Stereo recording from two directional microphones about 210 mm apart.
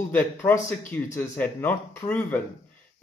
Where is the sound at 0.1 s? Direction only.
10° left (ahead or behind).